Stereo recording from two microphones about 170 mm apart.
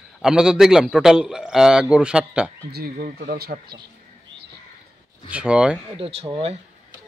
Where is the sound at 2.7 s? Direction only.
65° right (ahead or behind).